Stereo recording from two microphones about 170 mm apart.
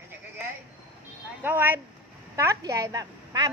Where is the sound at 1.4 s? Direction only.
10° right (ahead or behind).